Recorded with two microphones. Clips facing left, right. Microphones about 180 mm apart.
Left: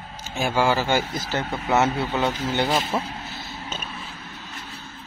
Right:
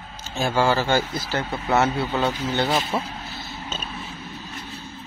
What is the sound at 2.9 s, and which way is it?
Speech, 10° right (ahead or behind).